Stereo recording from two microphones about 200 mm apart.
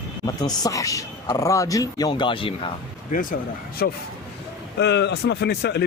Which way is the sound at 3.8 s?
50° left (ahead or behind).